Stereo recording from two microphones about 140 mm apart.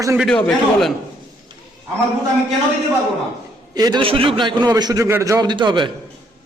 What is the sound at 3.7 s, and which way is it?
A man's voice, 30° right (ahead or behind).